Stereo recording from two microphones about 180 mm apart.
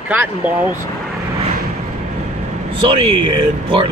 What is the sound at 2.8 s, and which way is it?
Speech, 30° right (ahead or behind).